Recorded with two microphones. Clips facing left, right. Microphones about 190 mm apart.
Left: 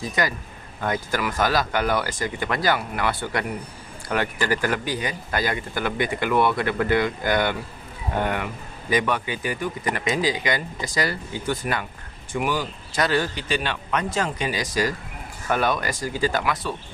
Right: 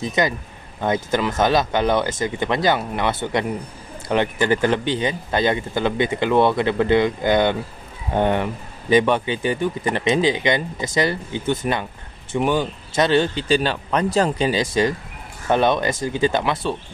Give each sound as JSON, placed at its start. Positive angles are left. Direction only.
{"t": 0.0, "sound": "speech", "side_deg": -20}